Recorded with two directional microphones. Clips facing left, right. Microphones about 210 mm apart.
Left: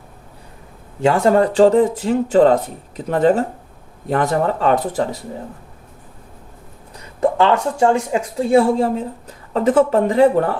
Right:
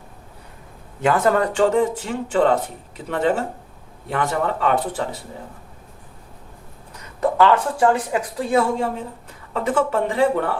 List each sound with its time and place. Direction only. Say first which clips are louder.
1.0 s speech: left 4 dB; 25° left (ahead or behind)
7.2 s speech: left 1 dB; 25° left (ahead or behind)